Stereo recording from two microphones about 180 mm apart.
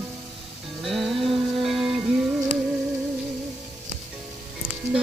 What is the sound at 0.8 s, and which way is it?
Music, centre (ahead or behind).